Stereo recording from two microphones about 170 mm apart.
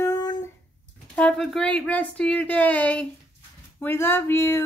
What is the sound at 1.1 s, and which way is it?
Speech, 5° left (ahead or behind).